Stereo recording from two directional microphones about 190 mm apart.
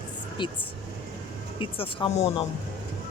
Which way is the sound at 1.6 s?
30° left (ahead or behind).